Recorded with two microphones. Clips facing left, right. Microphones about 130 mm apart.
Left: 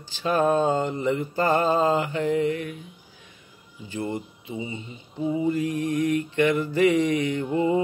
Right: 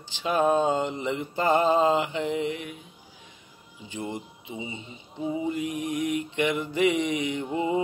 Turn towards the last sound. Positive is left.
turn(degrees=-15)  # may be behind; listen again after turning